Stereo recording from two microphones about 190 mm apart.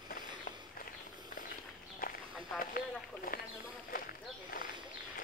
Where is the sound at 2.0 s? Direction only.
50° left (ahead or behind).